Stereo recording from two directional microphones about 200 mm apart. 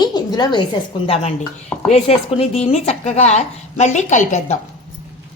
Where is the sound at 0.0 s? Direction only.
20° left (ahead or behind); by 4.5 s 35° left (ahead or behind).